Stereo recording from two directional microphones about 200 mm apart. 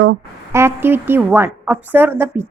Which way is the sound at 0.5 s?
10° right (ahead or behind).